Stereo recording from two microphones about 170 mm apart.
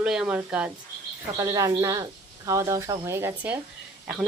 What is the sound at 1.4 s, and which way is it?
Speech, 20° right (ahead or behind).